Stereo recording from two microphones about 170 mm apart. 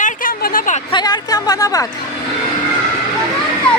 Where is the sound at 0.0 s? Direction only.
55° left (ahead or behind).